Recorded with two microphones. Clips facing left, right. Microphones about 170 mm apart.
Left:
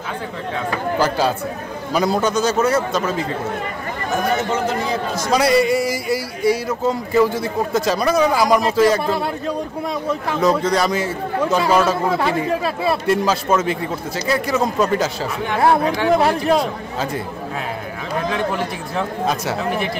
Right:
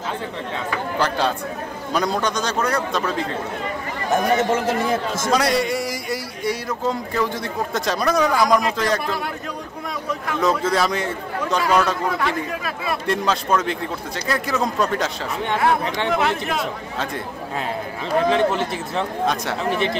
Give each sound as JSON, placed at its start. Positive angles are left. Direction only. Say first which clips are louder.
{"t": 0.9, "sound": "speech", "louder": "left 3 dB", "side_deg": 5}
{"t": 5.3, "sound": "speech", "louder": "left 5 dB", "side_deg": 0}
{"t": 9.0, "sound": "speech", "louder": "left 5 dB", "side_deg": 30}
{"t": 10.4, "sound": "speech", "louder": "left 2 dB", "side_deg": 0}
{"t": 12.2, "sound": "speech", "louder": "left 5 dB", "side_deg": 30}
{"t": 13.0, "sound": "speech", "louder": "left 4 dB", "side_deg": 5}
{"t": 16.1, "sound": "speech", "louder": "left 7 dB", "side_deg": 35}
{"t": 18.3, "sound": "speech", "louder": "right 1 dB", "side_deg": -25}
{"t": 18.9, "sound": "speech", "louder": "left 1 dB", "side_deg": 5}